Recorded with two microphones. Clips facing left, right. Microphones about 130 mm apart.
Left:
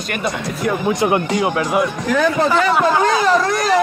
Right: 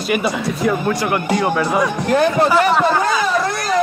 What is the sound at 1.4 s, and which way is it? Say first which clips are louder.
Speech: right 1 dB; 10° left (ahead or behind).